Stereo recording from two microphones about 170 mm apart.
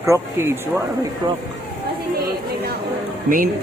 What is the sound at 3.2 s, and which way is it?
Speech, 55° right (ahead or behind).